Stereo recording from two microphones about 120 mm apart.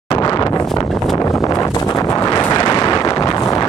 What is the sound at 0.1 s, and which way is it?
Wind noise, 35° left (ahead or behind).